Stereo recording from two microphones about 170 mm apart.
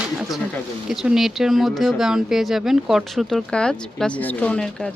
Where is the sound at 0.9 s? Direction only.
Centre (ahead or behind).